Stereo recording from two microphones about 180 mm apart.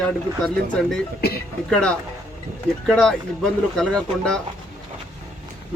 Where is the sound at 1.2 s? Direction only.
60° left (ahead or behind).